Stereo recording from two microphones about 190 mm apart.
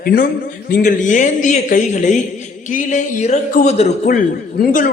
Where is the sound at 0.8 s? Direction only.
40° left (ahead or behind).